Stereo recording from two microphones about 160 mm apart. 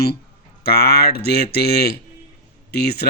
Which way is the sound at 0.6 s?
80° left.